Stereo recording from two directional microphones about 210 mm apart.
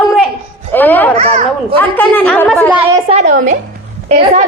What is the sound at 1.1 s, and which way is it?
Speech, 30° right (ahead or behind).